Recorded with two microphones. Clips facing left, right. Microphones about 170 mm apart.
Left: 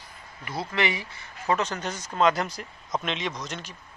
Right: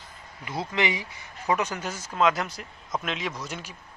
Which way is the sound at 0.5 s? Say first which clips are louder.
Even; 15° right (ahead or behind).